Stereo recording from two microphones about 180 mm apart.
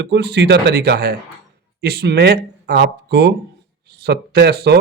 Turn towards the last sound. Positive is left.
turn(degrees=-60)  # may be behind; listen again after turning